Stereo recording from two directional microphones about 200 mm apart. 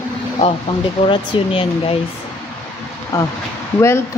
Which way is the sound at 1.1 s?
25° left (ahead or behind).